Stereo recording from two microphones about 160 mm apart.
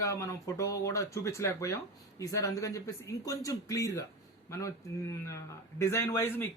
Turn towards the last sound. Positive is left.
turn(degrees=15)  # may be behind; listen again after turning